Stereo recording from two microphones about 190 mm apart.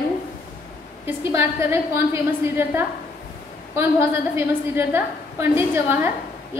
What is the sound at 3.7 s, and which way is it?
A woman's voice, 15° right (ahead or behind).